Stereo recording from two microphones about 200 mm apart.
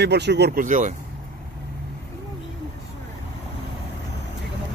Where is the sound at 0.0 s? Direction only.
55° right (ahead or behind); by 0.9 s 40° right (ahead or behind).